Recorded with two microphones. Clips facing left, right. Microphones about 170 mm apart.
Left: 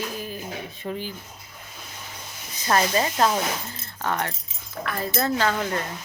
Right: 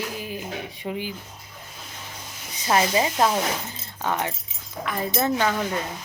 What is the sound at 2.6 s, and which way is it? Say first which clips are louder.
Speech: right 1 dB; 15° right (ahead or behind).